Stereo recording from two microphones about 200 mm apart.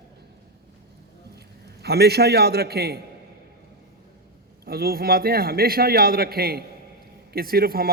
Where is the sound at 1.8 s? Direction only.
55° right (ahead or behind).